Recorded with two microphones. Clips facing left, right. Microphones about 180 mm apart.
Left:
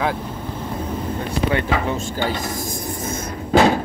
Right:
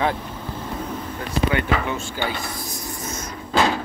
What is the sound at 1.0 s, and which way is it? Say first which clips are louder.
Speech: left 1 dB; 35° left (ahead or behind).